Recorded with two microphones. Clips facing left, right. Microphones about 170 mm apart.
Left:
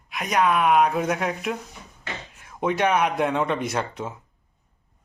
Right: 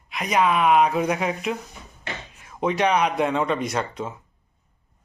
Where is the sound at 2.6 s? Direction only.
5° left (ahead or behind).